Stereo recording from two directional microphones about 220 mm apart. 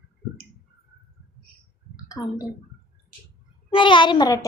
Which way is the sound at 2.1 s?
15° left (ahead or behind).